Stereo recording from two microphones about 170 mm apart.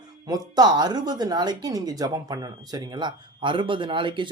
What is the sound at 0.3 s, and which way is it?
Speech, 25° right (ahead or behind).